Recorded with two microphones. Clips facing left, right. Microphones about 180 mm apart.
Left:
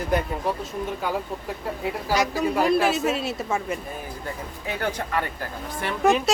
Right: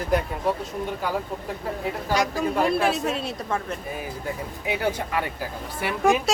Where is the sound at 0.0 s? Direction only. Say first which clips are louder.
Right 1 dB; centre (ahead or behind).